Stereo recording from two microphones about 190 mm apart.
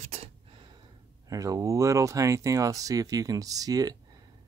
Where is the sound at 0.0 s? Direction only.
35° right (ahead or behind).